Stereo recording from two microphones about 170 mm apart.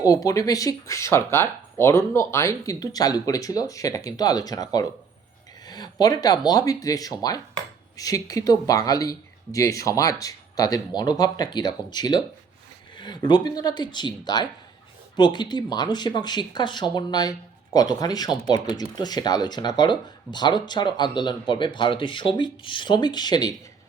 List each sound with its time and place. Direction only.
0.0 s speech: 20° left (ahead or behind)
5.6 s a sound: 25° left (ahead or behind)
6.5 s speech: 20° left (ahead or behind)